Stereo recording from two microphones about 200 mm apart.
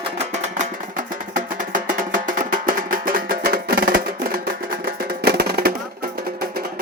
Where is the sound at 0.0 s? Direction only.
35° right (ahead or behind).